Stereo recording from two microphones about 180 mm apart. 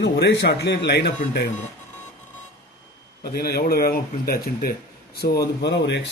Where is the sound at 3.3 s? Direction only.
60° left (ahead or behind).